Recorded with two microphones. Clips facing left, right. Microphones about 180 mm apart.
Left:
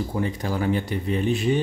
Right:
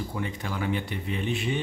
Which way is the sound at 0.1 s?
40° left (ahead or behind).